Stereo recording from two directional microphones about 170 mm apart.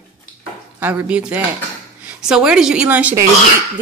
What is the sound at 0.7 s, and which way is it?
A woman's voice, 10° right (ahead or behind).